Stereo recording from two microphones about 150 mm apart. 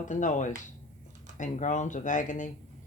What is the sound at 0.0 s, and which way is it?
Speech, 55° left (ahead or behind).